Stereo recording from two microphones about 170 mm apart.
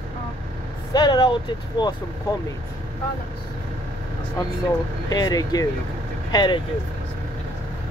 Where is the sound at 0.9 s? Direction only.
25° left (ahead or behind).